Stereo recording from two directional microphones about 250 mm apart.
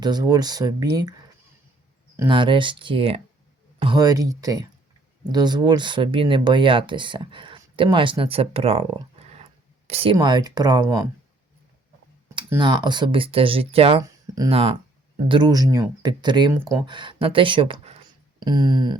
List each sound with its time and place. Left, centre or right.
0.0 s speech: centre
2.1 s speech: centre
12.3 s speech: centre